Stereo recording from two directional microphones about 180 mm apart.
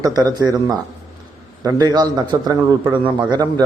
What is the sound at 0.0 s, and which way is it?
Speech, 20° right (ahead or behind).